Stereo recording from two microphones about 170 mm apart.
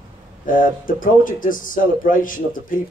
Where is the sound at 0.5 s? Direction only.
55° left (ahead or behind).